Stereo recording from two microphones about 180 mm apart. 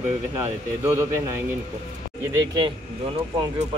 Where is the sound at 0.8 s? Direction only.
15° right (ahead or behind).